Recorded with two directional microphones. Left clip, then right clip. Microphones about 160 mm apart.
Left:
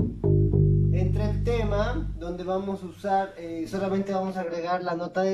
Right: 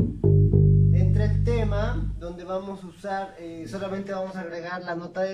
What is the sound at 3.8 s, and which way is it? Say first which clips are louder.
Speech: left 2 dB; 15° left (ahead or behind).